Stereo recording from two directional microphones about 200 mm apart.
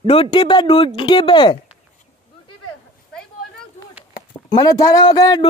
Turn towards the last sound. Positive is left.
turn(degrees=20)  # may be behind; listen again after turning